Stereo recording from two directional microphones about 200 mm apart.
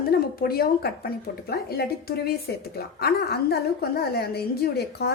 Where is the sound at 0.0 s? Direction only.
50° left (ahead or behind).